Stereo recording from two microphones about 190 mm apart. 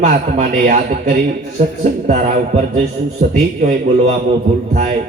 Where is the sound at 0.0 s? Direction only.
40° right (ahead or behind).